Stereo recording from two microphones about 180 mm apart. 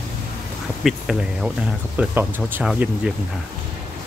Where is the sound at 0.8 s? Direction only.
Centre (ahead or behind).